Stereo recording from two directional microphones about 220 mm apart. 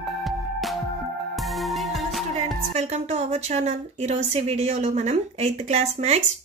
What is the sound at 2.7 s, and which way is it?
A woman's voice, 30° right (ahead or behind).